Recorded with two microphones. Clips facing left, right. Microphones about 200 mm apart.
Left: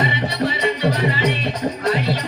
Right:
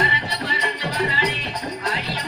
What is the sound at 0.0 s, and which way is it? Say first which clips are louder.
Music: left 5 dB; 55° left (ahead or behind).